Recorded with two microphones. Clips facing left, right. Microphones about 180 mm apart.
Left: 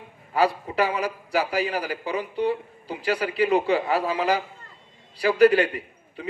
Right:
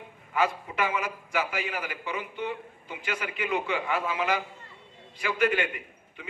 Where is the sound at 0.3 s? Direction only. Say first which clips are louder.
Left 5 dB; 35° left (ahead or behind).